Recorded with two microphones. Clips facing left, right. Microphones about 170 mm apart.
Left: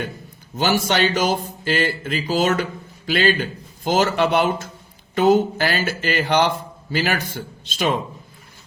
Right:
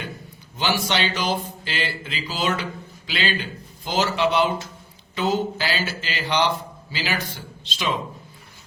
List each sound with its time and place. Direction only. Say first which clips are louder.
0.5 s speech: left 4 dB; 50° left (ahead or behind)